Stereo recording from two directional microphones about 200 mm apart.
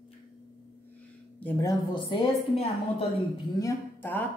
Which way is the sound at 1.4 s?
15° left (ahead or behind).